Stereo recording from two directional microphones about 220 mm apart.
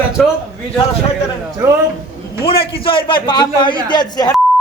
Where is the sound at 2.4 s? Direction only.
25° left (ahead or behind).